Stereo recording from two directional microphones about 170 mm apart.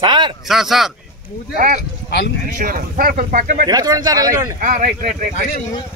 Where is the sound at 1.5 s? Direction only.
50° right (ahead or behind).